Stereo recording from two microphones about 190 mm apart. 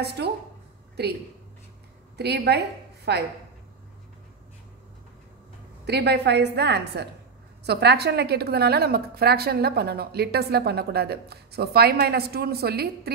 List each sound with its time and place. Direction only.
0.0 s a woman's voice: 60° right (ahead or behind)
2.1 s a woman's voice: 60° right (ahead or behind)
5.9 s a woman's voice: 60° right (ahead or behind)